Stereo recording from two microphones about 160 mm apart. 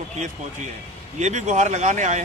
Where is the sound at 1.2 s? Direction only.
50° right (ahead or behind).